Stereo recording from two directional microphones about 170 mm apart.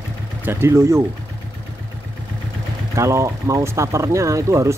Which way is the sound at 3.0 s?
15° right (ahead or behind).